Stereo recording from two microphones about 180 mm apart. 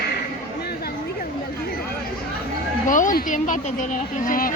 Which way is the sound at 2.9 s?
45° left (ahead or behind).